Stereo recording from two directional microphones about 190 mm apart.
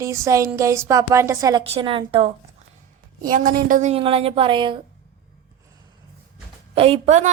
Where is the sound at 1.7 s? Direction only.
30° right (ahead or behind).